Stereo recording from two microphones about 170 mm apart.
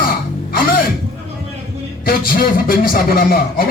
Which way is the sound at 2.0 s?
60° left (ahead or behind).